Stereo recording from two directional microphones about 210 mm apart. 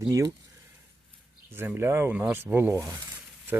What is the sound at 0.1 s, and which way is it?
Speech, 15° right (ahead or behind).